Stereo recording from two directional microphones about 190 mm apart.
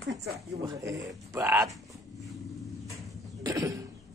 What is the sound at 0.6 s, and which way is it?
Speech, 15° right (ahead or behind).